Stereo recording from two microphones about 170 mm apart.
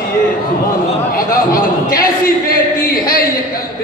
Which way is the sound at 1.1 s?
55° left (ahead or behind).